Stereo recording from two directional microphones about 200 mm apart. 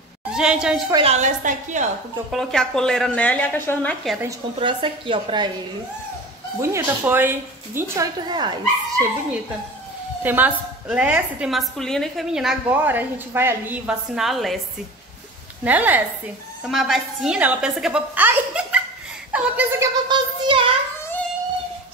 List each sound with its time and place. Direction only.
0.3 s a woman's voice: 5° right (ahead or behind)
0.9 s a woman's voice: 30° right (ahead or behind)
2.3 s a woman's voice: centre (ahead or behind)
4.6 s a woman's voice: 25° right (ahead or behind)
6.6 s a woman's voice: 10° right (ahead or behind)
10.2 s a woman's voice: 10° right (ahead or behind)
15.6 s a woman's voice: 10° right (ahead or behind)
20.1 s a woman's voice: 25° right (ahead or behind)
21.0 s a sound: 10° left (ahead or behind)